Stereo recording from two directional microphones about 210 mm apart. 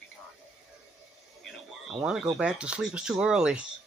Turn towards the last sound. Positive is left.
turn(degrees=-5)  # may be behind; listen again after turning